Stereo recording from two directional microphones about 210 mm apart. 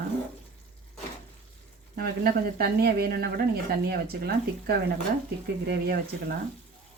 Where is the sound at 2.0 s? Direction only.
45° right (ahead or behind).